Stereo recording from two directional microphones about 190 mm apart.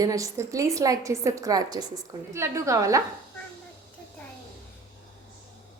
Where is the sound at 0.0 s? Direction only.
15° right (ahead or behind).